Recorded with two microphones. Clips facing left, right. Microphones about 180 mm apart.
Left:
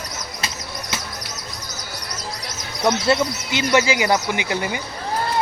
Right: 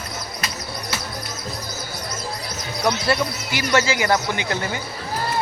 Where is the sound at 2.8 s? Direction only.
20° left (ahead or behind).